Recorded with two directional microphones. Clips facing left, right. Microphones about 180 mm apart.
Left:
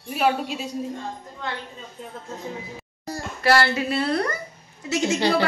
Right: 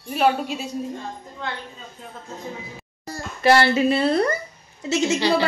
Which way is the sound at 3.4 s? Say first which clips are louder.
Right 4 dB; 20° right (ahead or behind).